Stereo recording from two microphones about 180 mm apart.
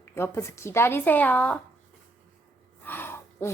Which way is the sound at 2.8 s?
10° left (ahead or behind).